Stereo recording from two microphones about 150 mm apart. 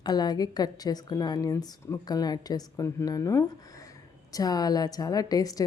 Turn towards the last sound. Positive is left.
turn(degrees=25)  # may be behind; listen again after turning